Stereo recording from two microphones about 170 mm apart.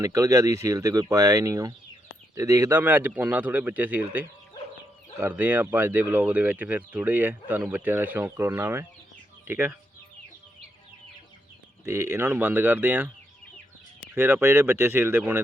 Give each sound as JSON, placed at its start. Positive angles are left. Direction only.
{"t": 0.0, "sound": "speech", "side_deg": -20}
{"t": 11.9, "sound": "speech", "side_deg": -15}
{"t": 14.1, "sound": "speech", "side_deg": -10}